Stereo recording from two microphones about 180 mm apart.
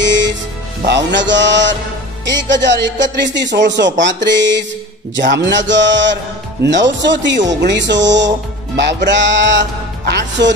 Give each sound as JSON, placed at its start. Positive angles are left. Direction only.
{"t": 0.0, "sound": "music", "side_deg": -85}
{"t": 0.8, "sound": "speech", "side_deg": -80}